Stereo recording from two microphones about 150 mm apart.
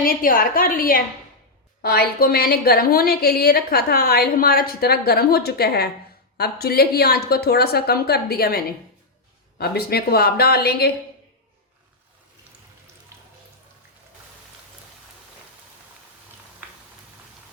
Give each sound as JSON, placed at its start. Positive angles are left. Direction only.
{"t": 0.0, "sound": "a woman's voice", "side_deg": 70}
{"t": 1.8, "sound": "a woman's voice", "side_deg": 90}